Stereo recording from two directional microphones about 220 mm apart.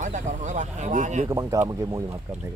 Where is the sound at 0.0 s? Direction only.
35° right (ahead or behind).